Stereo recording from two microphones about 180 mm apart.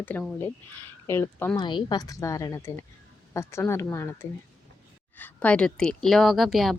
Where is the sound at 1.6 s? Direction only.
25° left (ahead or behind).